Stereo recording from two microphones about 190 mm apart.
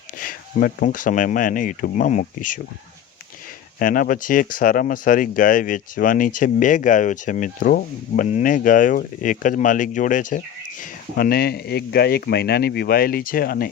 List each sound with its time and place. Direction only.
0.2 s speech: 45° left (ahead or behind)
3.8 s speech: 45° left (ahead or behind)